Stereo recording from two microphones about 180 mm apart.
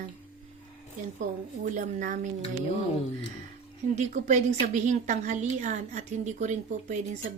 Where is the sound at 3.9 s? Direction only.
40° right (ahead or behind).